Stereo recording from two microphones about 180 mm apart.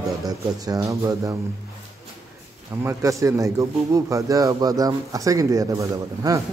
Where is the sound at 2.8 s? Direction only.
15° right (ahead or behind).